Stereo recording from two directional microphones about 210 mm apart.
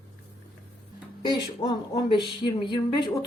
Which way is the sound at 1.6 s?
20° left (ahead or behind).